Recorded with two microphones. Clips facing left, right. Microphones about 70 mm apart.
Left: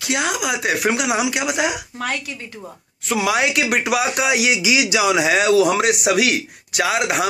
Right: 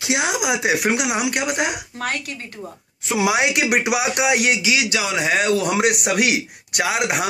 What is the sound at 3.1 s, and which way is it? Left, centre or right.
Speech, centre.